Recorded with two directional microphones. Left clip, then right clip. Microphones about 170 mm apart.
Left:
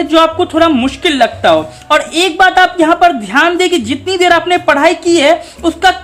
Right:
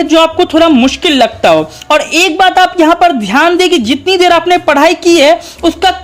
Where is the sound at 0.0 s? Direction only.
30° right (ahead or behind).